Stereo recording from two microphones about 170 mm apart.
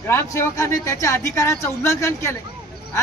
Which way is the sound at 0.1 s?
15° left (ahead or behind).